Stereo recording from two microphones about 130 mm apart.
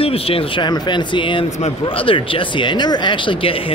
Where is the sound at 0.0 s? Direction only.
45° left (ahead or behind).